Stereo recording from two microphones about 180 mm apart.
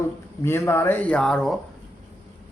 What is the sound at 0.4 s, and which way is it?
Speech, 15° left (ahead or behind).